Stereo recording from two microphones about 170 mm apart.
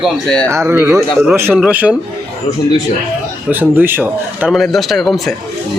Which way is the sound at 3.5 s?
10° right (ahead or behind).